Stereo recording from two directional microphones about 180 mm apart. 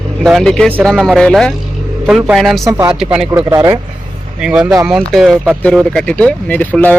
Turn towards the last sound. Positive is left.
turn(degrees=10)  # may be behind; listen again after turning